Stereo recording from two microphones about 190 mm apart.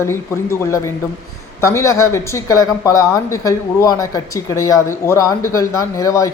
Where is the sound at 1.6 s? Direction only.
15° left (ahead or behind).